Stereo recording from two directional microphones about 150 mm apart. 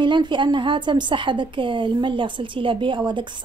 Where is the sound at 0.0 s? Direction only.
30° right (ahead or behind).